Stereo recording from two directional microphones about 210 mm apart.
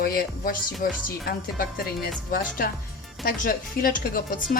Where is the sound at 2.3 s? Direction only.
45° left (ahead or behind).